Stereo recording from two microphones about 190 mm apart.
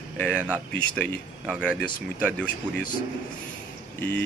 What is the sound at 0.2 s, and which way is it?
Speech, 5° left (ahead or behind).